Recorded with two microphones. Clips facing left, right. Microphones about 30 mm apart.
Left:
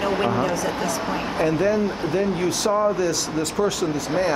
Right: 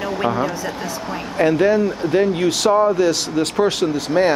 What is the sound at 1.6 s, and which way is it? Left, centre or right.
Speech, right.